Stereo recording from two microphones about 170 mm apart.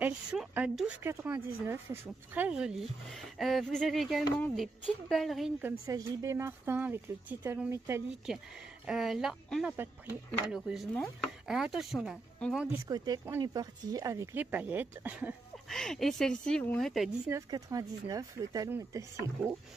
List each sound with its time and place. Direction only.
0.0 s speech: 5° right (ahead or behind)
5.6 s speech: 15° right (ahead or behind)
8.8 s speech: centre (ahead or behind)
12.8 s speech: 20° right (ahead or behind)
15.7 s speech: 5° left (ahead or behind)
17.3 s speech: 20° right (ahead or behind)